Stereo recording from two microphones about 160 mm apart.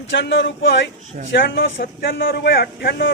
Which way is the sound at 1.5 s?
70° left (ahead or behind).